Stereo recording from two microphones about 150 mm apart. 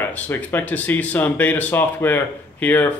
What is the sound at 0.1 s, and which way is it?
Speech, 10° left (ahead or behind).